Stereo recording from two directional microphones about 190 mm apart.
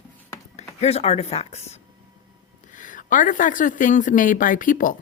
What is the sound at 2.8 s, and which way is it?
Speech, 45° left (ahead or behind).